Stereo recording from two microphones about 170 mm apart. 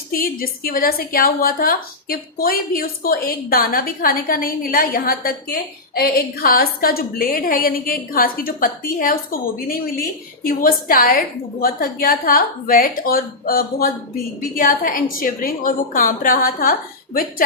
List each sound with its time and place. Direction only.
0.1 s a woman's voice: 60° left (ahead or behind)